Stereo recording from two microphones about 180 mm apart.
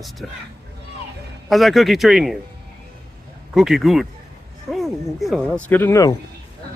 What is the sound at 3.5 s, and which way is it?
Speech, centre (ahead or behind).